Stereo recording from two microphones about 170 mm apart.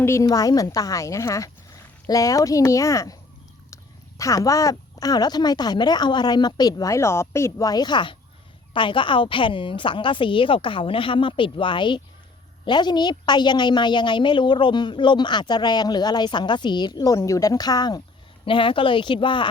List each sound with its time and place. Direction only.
0.0 s a woman's voice: 15° left (ahead or behind)
4.2 s a woman's voice: 20° left (ahead or behind)